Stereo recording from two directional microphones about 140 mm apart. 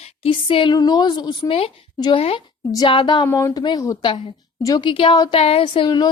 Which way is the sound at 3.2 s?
25° left (ahead or behind).